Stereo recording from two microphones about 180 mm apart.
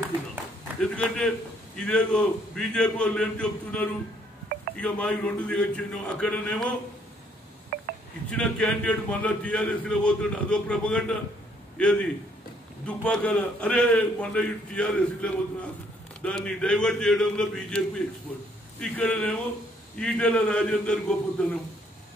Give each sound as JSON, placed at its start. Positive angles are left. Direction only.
{"t": 0.7, "sound": "a man's voice", "side_deg": 5}
{"t": 7.7, "sound": "telephone dialing", "side_deg": -60}
{"t": 8.3, "sound": "a man's voice", "side_deg": 5}